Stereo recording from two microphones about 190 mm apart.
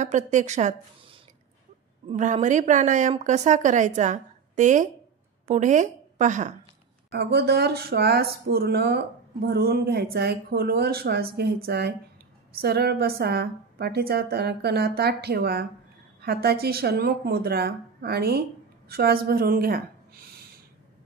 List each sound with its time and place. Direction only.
0.0 s a woman's voice: 40° right (ahead or behind)
2.0 s a woman's voice: 35° right (ahead or behind)
7.1 s a woman's voice: 60° right (ahead or behind)